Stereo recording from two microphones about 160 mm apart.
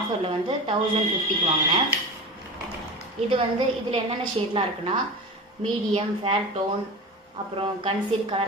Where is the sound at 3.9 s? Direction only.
35° right (ahead or behind).